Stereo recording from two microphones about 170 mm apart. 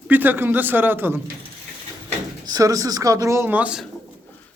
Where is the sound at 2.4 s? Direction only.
20° right (ahead or behind).